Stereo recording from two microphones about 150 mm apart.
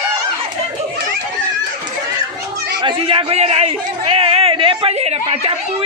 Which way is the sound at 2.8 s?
35° right (ahead or behind).